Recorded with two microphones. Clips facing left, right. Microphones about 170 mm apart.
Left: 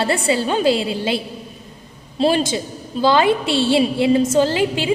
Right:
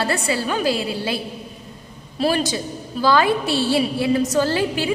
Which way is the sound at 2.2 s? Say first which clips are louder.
Left 3 dB; 25° left (ahead or behind).